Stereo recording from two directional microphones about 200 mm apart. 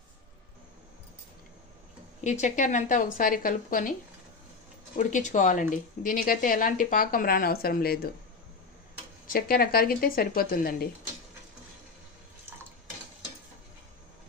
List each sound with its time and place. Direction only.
2.2 s a woman's voice: 35° left (ahead or behind)
4.9 s a woman's voice: 40° left (ahead or behind)
9.3 s a woman's voice: 50° left (ahead or behind)